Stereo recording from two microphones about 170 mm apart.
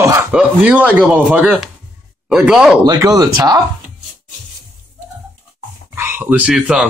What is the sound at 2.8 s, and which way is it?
Speech, 20° right (ahead or behind).